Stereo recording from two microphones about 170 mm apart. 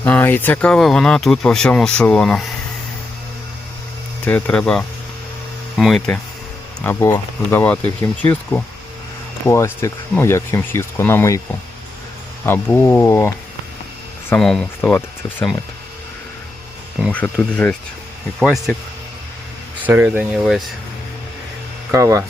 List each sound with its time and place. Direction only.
0.0 s speech: 10° left (ahead or behind)
4.3 s speech: 10° left (ahead or behind)
6.8 s speech: 15° left (ahead or behind)
12.5 s speech: 15° left (ahead or behind)
14.3 s speech: 5° left (ahead or behind)
17.1 s speech: 10° left (ahead or behind)
19.8 s speech: 10° right (ahead or behind)
21.9 s speech: 20° right (ahead or behind)